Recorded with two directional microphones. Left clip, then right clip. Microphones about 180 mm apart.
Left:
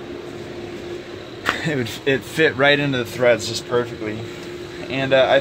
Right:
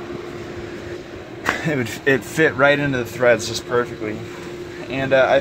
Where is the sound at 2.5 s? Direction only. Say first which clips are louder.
Even; 5° left (ahead or behind).